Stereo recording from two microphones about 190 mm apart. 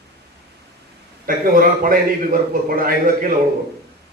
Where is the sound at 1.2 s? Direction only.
50° right (ahead or behind).